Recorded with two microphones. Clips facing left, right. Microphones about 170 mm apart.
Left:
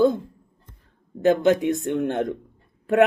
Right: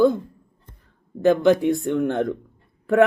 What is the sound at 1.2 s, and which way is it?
Speech, 20° left (ahead or behind).